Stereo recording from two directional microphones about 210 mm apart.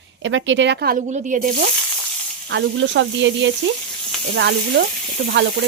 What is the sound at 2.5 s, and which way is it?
Sizzle, 55° right (ahead or behind).